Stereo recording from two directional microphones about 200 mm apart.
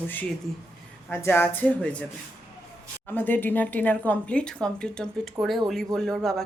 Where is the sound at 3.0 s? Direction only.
10° left (ahead or behind).